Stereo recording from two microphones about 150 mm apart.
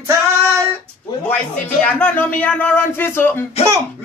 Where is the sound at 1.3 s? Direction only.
10° left (ahead or behind).